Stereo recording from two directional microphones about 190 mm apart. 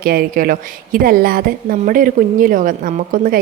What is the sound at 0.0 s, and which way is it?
Speech, 50° right (ahead or behind).